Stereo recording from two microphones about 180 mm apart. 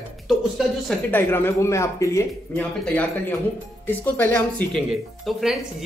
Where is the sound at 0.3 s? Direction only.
Centre (ahead or behind).